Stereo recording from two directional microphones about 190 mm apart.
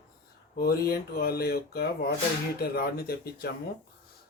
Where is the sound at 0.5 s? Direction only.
55° left (ahead or behind).